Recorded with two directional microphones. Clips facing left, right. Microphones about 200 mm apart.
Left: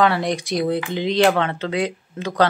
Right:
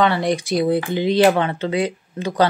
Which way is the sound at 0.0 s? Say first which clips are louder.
Right 1 dB; centre (ahead or behind).